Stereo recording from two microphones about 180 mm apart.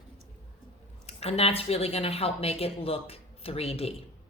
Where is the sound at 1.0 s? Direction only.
35° left (ahead or behind).